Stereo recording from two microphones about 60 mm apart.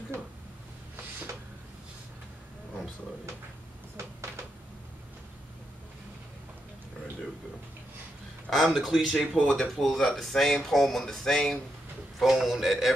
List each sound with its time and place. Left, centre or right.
8.5 s speech: centre
9.4 s speech: centre